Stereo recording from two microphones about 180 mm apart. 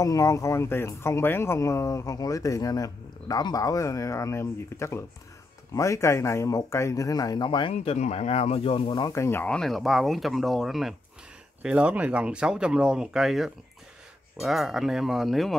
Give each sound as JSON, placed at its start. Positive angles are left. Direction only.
{"t": 0.0, "sound": "speech", "side_deg": 15}